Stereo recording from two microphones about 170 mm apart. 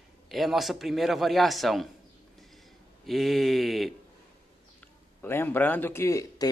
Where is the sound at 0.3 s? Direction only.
Centre (ahead or behind).